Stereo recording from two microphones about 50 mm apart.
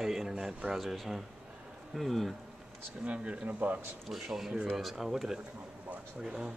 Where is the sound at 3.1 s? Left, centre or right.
Right.